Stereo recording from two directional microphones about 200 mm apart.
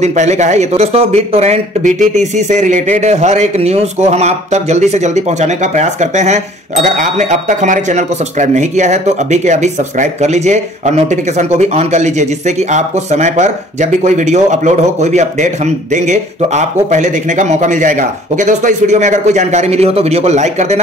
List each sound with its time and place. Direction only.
0.0 s speech: 35° right (ahead or behind)